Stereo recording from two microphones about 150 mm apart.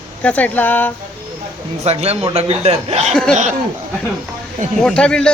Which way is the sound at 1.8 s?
45° right (ahead or behind).